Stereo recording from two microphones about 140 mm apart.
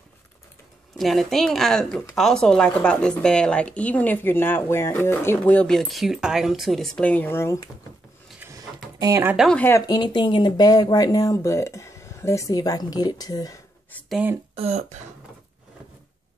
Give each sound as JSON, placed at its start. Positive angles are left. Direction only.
{"t": 0.9, "sound": "speech", "side_deg": 0}
{"t": 8.4, "sound": "a sound", "side_deg": -20}
{"t": 9.0, "sound": "speech", "side_deg": -20}
{"t": 9.5, "sound": "speech", "side_deg": 15}
{"t": 9.8, "sound": "speech", "side_deg": 30}
{"t": 14.5, "sound": "speech", "side_deg": -50}